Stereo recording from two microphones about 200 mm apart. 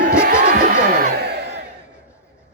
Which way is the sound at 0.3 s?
45° right (ahead or behind).